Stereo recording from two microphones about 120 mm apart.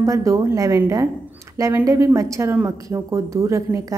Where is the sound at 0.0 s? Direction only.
25° right (ahead or behind).